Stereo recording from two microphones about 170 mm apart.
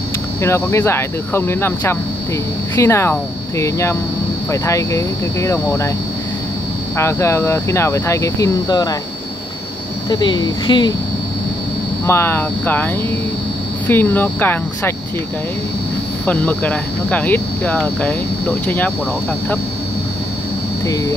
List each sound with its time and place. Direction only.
0.4 s speech: 15° left (ahead or behind)
7.0 s speech: 15° left (ahead or behind)
10.0 s speech: 25° left (ahead or behind)
12.1 s speech: 15° left (ahead or behind)
16.3 s speech: 10° left (ahead or behind)
20.8 s speech: 20° left (ahead or behind)